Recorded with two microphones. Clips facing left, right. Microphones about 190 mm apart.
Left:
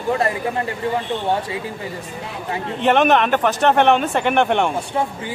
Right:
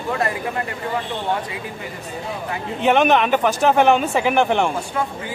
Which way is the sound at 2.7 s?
Centre (ahead or behind).